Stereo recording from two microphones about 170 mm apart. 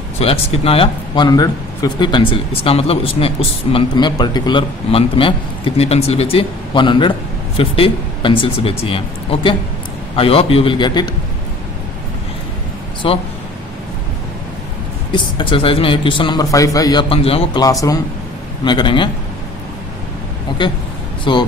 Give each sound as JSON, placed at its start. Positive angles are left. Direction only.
{"t": 0.2, "sound": "speech", "side_deg": 35}
{"t": 13.0, "sound": "a man's voice", "side_deg": 30}
{"t": 15.3, "sound": "a man's voice", "side_deg": 30}
{"t": 17.1, "sound": "speech", "side_deg": 35}
{"t": 17.6, "sound": "a man's voice", "side_deg": 20}
{"t": 20.6, "sound": "a man's voice", "side_deg": 25}